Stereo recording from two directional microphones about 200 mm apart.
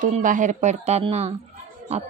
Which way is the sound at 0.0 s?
40° right (ahead or behind).